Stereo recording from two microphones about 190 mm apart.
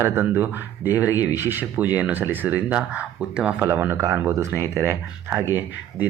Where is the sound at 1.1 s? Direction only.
20° left (ahead or behind).